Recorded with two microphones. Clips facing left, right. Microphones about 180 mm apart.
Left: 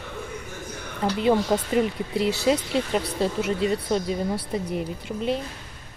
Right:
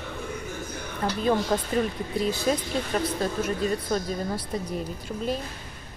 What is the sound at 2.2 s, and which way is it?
Speech, 75° left (ahead or behind).